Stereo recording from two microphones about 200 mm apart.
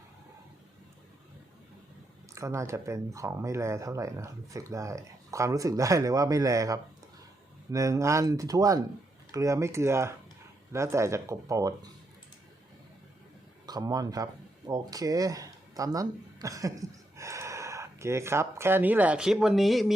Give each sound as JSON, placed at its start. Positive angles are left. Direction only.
{"t": 2.3, "sound": "speech", "side_deg": -15}
{"t": 13.7, "sound": "speech", "side_deg": -20}